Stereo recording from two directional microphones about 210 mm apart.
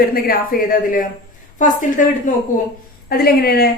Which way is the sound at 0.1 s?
45° left (ahead or behind).